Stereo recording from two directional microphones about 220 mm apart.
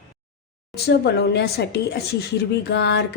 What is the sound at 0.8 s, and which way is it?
A woman's voice, 50° left (ahead or behind).